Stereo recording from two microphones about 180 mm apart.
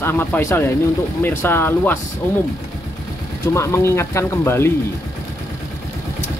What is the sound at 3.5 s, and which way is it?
Speech, 15° left (ahead or behind).